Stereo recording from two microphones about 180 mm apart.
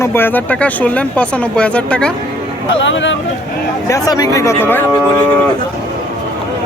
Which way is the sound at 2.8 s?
90° left.